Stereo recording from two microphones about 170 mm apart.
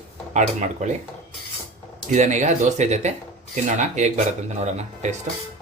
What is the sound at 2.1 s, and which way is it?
Speech, 45° right (ahead or behind).